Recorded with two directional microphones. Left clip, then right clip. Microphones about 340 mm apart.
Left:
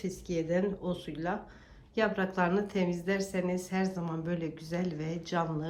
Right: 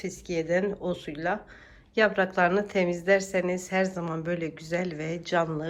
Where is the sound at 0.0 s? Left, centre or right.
Centre.